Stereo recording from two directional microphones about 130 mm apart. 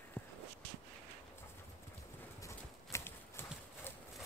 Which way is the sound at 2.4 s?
20° left (ahead or behind).